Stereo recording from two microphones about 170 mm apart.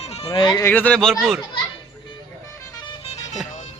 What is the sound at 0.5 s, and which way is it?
Speech, 10° left (ahead or behind).